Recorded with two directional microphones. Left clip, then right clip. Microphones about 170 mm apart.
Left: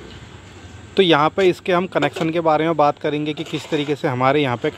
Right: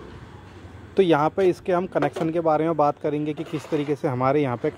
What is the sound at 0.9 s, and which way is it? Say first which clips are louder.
Speech: left 4 dB; 10° right (ahead or behind).